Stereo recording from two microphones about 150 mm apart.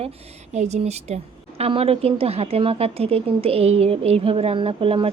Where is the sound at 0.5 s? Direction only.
50° right (ahead or behind).